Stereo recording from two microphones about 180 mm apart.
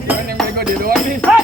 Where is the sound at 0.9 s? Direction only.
Centre (ahead or behind).